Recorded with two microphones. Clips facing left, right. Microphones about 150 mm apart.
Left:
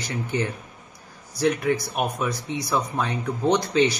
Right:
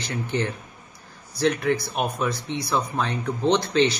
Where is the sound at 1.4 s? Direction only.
15° left (ahead or behind).